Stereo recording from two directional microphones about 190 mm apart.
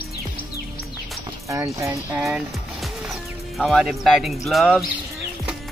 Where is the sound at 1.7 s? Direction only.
15° right (ahead or behind).